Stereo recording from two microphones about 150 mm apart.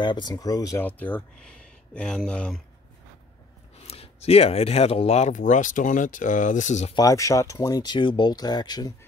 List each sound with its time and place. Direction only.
0.0 s speech: 30° left (ahead or behind)
0.8 s speech: 10° left (ahead or behind)
3.8 s speech: 40° left (ahead or behind)
7.0 s speech: 20° left (ahead or behind)